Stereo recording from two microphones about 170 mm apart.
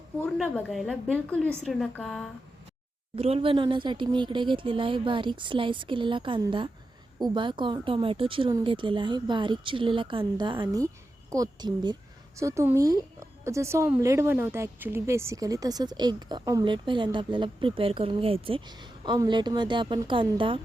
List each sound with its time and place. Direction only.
0.3 s a woman's voice: centre (ahead or behind)
3.2 s a woman's voice: 35° right (ahead or behind)